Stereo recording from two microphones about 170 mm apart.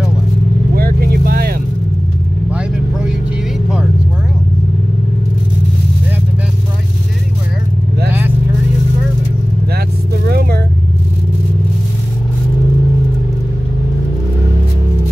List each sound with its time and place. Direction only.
0.7 s vehicle: 60° right (ahead or behind)
2.5 s vehicle: 5° right (ahead or behind)
10.2 s vehicle: 70° right (ahead or behind)